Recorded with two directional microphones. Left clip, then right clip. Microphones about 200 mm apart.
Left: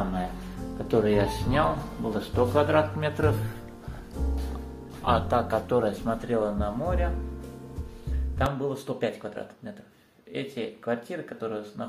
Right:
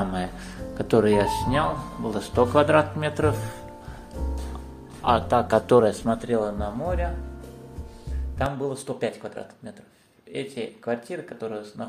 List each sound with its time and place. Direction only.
0.8 s speech: 25° right (ahead or behind)
1.1 s speech: 10° right (ahead or behind)
5.0 s speech: 30° right (ahead or behind)
5.7 s speech: 60° right (ahead or behind)
6.0 s speech: 25° right (ahead or behind)
8.6 s speech: 15° right (ahead or behind)
10.3 s speech: 15° right (ahead or behind)